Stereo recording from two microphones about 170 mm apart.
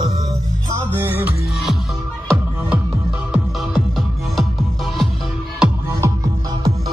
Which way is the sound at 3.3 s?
Centre (ahead or behind).